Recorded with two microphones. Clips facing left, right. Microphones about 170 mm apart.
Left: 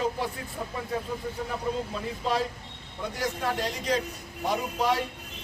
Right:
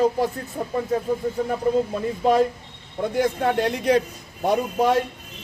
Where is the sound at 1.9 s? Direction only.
50° right (ahead or behind).